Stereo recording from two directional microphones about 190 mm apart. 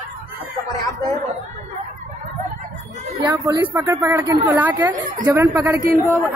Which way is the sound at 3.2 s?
20° right (ahead or behind).